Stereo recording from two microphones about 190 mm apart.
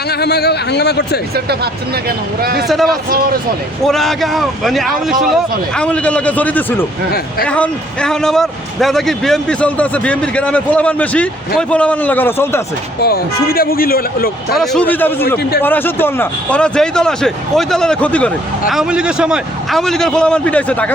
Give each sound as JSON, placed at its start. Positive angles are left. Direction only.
{"t": 0.1, "sound": "speech", "side_deg": 60}
{"t": 1.5, "sound": "speech", "side_deg": -55}
{"t": 3.8, "sound": "a man's voice", "side_deg": 0}
{"t": 13.0, "sound": "speech", "side_deg": 55}
{"t": 14.5, "sound": "speech", "side_deg": 0}
{"t": 18.7, "sound": "speech", "side_deg": -5}